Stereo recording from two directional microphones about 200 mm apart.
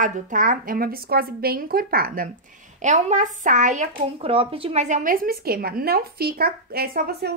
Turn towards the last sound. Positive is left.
turn(degrees=-50)  # may be behind; listen again after turning